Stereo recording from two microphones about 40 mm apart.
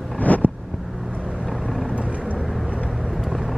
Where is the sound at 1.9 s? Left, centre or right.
Right.